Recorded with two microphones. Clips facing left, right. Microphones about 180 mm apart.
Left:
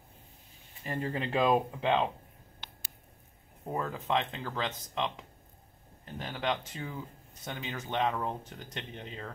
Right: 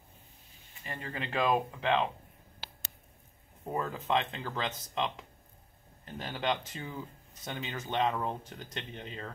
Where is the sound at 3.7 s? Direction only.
Centre (ahead or behind).